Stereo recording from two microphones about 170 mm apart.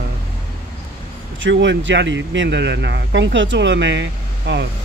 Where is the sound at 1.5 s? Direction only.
90° right.